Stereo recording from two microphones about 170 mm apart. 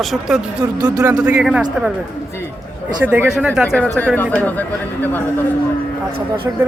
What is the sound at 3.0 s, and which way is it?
Speech, 10° right (ahead or behind).